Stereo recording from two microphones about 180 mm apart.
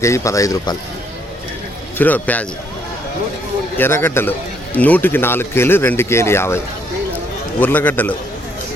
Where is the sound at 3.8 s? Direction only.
10° left (ahead or behind).